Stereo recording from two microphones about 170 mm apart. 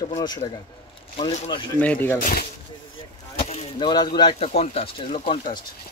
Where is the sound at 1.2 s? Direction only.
40° left (ahead or behind).